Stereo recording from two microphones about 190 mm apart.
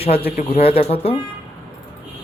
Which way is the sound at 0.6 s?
30° left (ahead or behind).